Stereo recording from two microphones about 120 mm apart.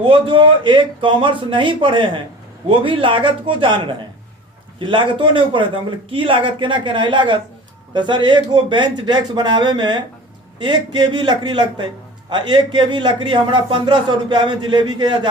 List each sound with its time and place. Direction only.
0.0 s a man's voice: 45° right (ahead or behind)